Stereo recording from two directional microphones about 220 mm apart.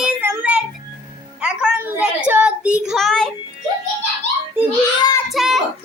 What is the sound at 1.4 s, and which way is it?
Child singing, 5° right (ahead or behind).